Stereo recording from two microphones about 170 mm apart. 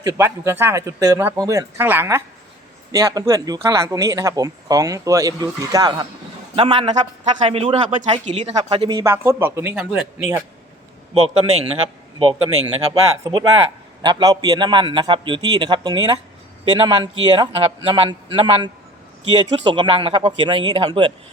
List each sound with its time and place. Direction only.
0.0 s a man's voice: 15° right (ahead or behind); by 8.5 s 40° right (ahead or behind)
8.5 s speech: 30° right (ahead or behind)
9.1 s a man's voice: 15° right (ahead or behind)
11.1 s a man's voice: 35° right (ahead or behind)
12.3 s a man's voice: 25° right (ahead or behind)